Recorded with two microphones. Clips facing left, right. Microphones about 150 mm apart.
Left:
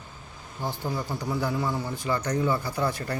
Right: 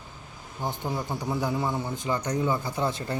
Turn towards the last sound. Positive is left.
turn(degrees=-20)  # may be behind; listen again after turning